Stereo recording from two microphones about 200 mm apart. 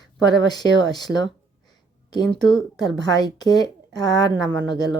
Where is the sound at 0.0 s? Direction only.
20° left (ahead or behind).